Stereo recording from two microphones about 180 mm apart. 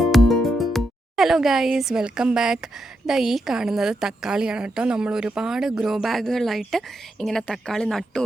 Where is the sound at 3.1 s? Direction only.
Centre (ahead or behind).